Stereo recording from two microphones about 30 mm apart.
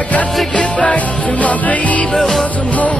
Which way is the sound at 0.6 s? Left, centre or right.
Left.